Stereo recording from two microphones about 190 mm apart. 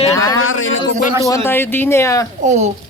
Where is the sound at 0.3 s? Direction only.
90° left.